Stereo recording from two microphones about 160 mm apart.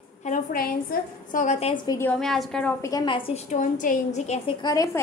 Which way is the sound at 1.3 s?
50° left (ahead or behind).